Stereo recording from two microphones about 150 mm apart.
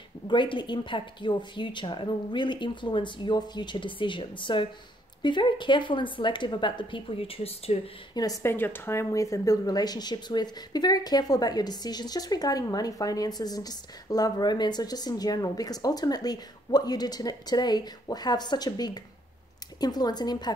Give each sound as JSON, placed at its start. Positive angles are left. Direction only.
{"t": 0.3, "sound": "speech", "side_deg": 30}
{"t": 8.1, "sound": "speech", "side_deg": 25}